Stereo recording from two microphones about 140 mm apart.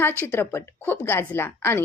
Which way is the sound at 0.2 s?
15° left (ahead or behind).